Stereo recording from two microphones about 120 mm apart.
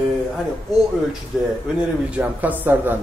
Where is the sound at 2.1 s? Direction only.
15° right (ahead or behind).